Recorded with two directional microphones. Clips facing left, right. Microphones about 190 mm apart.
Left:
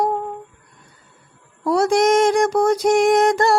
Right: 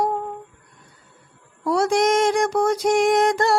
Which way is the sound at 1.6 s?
40° left (ahead or behind).